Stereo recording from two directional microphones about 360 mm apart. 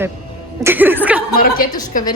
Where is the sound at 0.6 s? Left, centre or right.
Centre.